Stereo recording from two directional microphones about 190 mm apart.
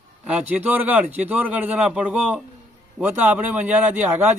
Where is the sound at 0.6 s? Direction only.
10° right (ahead or behind).